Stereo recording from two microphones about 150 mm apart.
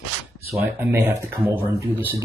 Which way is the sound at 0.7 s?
15° right (ahead or behind).